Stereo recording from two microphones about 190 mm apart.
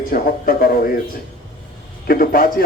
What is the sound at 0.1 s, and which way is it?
Speech, 50° left (ahead or behind).